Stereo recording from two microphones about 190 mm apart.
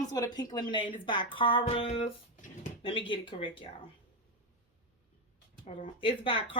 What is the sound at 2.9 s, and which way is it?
Speech, 25° left (ahead or behind).